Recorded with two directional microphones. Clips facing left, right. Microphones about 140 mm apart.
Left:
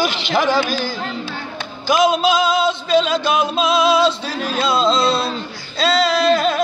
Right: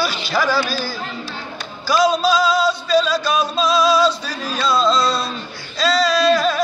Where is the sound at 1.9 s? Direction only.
20° left (ahead or behind).